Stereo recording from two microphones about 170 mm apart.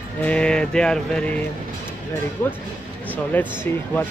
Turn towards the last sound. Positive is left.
turn(degrees=10)  # may be behind; listen again after turning